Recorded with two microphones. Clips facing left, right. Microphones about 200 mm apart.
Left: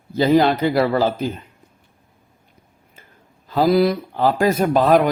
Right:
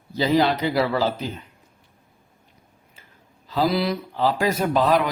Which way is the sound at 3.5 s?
45° left (ahead or behind).